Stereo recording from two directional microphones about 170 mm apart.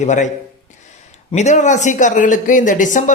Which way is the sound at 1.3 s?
45° left (ahead or behind).